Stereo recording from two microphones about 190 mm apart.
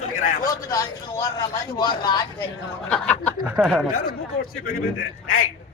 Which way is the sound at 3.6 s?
5° right (ahead or behind).